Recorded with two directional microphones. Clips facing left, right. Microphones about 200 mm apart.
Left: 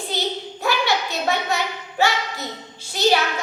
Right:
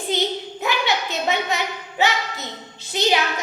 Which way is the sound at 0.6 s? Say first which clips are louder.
Left 2 dB; 20° right (ahead or behind).